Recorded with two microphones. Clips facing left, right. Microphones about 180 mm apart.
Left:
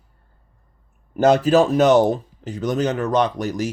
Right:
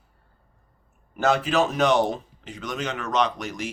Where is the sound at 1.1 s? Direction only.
40° left (ahead or behind).